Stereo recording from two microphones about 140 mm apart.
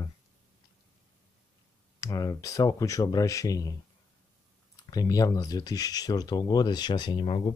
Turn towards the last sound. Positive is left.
turn(degrees=40)  # may be behind; listen again after turning